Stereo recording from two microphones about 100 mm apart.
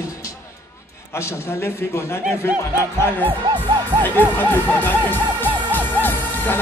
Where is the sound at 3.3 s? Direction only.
50° right (ahead or behind).